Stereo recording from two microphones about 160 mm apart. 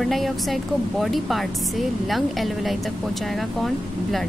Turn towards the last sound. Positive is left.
turn(degrees=0)  # may be behind; listen again after turning